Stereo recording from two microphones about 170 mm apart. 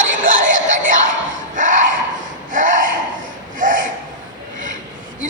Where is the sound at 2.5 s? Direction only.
50° right (ahead or behind).